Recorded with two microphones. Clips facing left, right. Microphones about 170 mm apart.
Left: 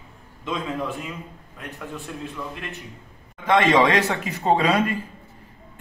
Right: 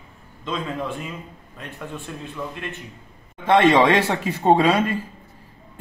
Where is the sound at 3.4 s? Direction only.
30° right (ahead or behind).